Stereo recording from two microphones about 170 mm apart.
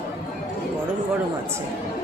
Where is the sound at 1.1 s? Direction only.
15° right (ahead or behind).